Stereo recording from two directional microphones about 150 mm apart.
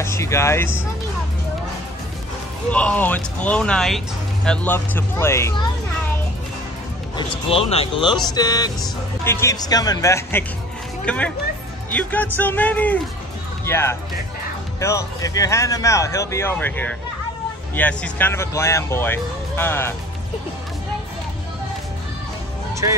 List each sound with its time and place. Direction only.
0.0 s speech: 20° left (ahead or behind)
2.7 s speech: 10° left (ahead or behind)
7.2 s speech: 40° left (ahead or behind)
8.3 s speech: 25° left (ahead or behind)
11.1 s speech: 10° left (ahead or behind)